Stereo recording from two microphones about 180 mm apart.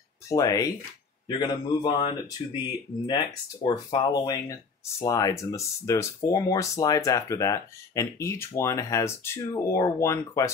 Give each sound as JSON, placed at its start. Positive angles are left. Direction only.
{"t": 0.3, "sound": "speech", "side_deg": 20}
{"t": 3.6, "sound": "speech", "side_deg": 20}